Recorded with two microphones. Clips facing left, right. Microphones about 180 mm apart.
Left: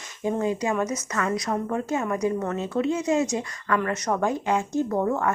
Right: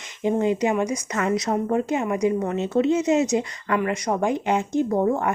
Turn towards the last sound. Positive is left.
turn(degrees=-20)  # may be behind; listen again after turning